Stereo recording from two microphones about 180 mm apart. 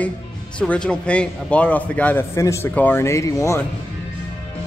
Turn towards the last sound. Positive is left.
turn(degrees=15)  # may be behind; listen again after turning